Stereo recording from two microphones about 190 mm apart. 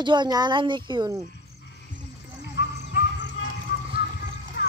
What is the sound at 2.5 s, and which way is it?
Music, 65° left (ahead or behind).